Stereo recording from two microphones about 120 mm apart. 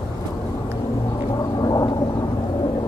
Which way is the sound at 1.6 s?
35° left (ahead or behind).